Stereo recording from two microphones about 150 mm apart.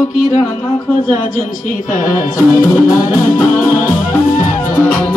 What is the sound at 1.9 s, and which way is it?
Music, 60° left (ahead or behind).